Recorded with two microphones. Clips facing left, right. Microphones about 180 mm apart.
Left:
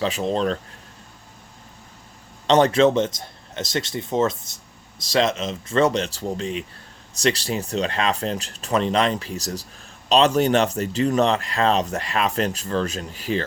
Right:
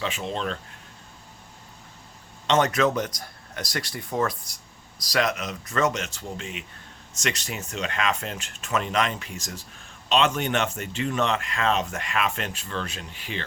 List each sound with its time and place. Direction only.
0.0 s speech: 35° left (ahead or behind)
2.5 s speech: 30° left (ahead or behind)